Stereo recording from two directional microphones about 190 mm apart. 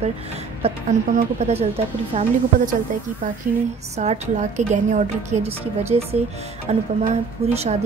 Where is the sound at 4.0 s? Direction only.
35° right (ahead or behind).